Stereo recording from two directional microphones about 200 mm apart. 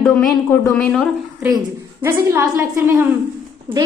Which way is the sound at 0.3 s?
15° left (ahead or behind).